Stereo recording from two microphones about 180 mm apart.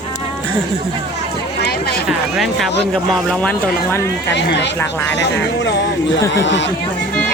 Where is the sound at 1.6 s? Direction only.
60° left (ahead or behind).